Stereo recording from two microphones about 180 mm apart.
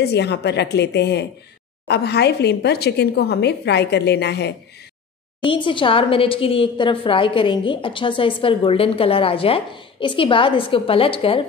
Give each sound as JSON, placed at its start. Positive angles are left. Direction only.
{"t": 0.0, "sound": "a woman's voice", "side_deg": 65}
{"t": 5.4, "sound": "a woman's voice", "side_deg": 30}